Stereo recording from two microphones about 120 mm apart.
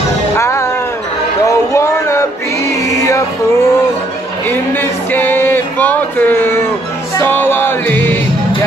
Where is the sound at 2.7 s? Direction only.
25° left (ahead or behind).